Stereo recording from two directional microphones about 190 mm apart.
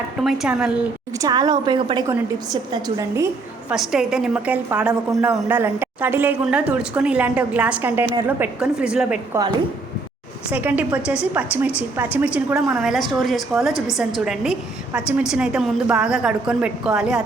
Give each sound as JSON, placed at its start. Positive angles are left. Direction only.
{"t": 0.2, "sound": "a woman's voice", "side_deg": -5}
{"t": 1.2, "sound": "a woman's voice", "side_deg": -20}
{"t": 3.7, "sound": "a woman's voice", "side_deg": -5}
{"t": 10.5, "sound": "a woman's voice", "side_deg": -10}